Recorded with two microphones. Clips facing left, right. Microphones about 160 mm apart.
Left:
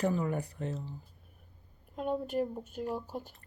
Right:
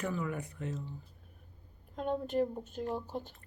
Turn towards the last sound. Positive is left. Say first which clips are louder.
# even
turn(degrees=10)  # may be behind; listen again after turning